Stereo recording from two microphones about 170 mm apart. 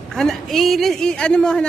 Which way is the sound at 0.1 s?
Centre (ahead or behind).